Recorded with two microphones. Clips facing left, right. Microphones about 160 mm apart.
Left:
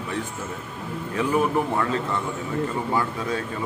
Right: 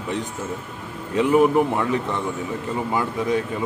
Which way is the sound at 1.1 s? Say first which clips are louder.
Right 6 dB; 20° right (ahead or behind).